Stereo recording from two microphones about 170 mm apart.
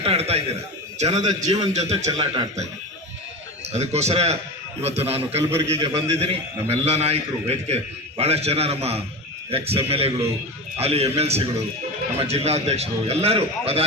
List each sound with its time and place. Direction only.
0.0 s a man's voice: 35° right (ahead or behind)
3.7 s a man's voice: 40° right (ahead or behind)